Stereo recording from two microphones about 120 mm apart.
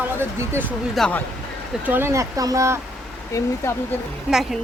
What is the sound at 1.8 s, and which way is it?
Speech, 15° right (ahead or behind).